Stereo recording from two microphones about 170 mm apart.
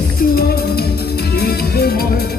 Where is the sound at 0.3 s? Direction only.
65° left (ahead or behind).